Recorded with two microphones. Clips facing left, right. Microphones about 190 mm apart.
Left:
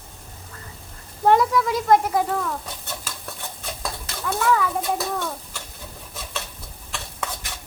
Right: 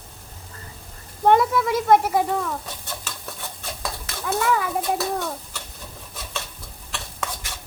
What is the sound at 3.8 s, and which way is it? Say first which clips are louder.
Stir: left 1 dB; 5° right (ahead or behind).